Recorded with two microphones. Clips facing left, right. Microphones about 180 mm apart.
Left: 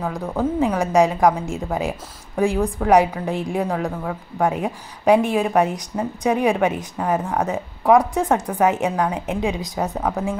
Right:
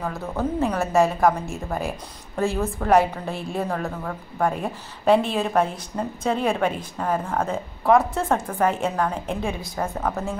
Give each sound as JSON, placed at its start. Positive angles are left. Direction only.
{"t": 0.1, "sound": "a woman's voice", "side_deg": 15}